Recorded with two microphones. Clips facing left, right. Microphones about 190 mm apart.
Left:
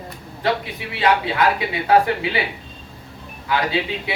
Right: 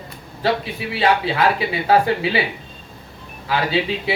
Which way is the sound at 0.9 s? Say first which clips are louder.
Right 1 dB; 30° right (ahead or behind).